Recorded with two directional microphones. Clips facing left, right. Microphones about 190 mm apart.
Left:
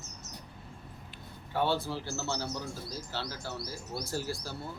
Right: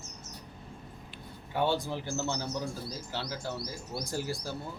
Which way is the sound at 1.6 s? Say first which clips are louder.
Right 1 dB; 15° right (ahead or behind).